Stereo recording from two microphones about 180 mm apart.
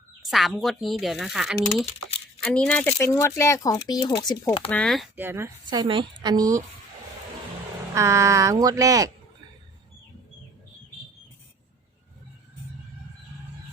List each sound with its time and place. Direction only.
0.3 s speech: centre (ahead or behind); by 4.7 s 25° left (ahead or behind)
4.7 s speech: 5° left (ahead or behind)
5.1 s a woman's voice: 10° right (ahead or behind)
7.9 s speech: 15° right (ahead or behind)